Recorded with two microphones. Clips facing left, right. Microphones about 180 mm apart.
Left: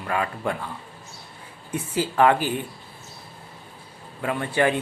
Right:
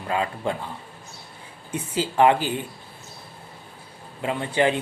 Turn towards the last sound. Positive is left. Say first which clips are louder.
# even
turn(degrees=-20)  # may be behind; listen again after turning